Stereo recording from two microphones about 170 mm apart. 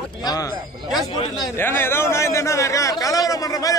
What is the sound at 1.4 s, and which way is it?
A man's voice, 15° left (ahead or behind).